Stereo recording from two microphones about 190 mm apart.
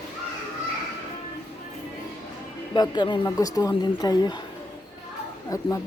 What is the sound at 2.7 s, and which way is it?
A woman's voice, 25° left (ahead or behind).